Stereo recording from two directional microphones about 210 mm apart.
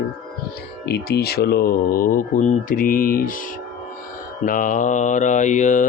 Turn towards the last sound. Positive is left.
turn(degrees=35)  # may be behind; listen again after turning